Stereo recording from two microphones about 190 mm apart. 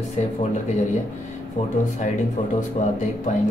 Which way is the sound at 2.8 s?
45° left (ahead or behind).